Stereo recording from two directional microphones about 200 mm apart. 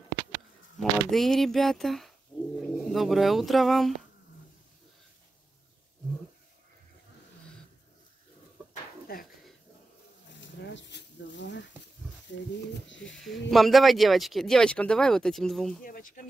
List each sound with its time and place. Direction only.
0.7 s speech: centre (ahead or behind)
8.6 s dishes: 10° right (ahead or behind)
9.0 s a sound: 45° left (ahead or behind)
10.3 s a sound: 65° left (ahead or behind)
12.3 s speech: 65° left (ahead or behind)
13.5 s speech: centre (ahead or behind)
15.8 s speech: 45° left (ahead or behind)